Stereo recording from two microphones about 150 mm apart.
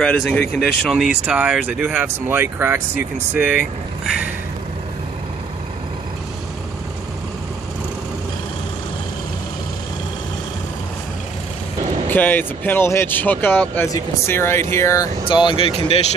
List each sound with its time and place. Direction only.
0.0 s speech: 5° left (ahead or behind)
12.1 s speech: 15° left (ahead or behind)
15.2 s speech: 35° left (ahead or behind)